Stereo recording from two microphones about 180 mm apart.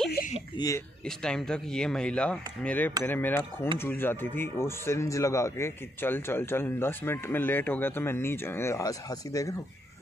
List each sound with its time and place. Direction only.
0.6 s speech: 20° left (ahead or behind)
1.0 s speech: 5° left (ahead or behind)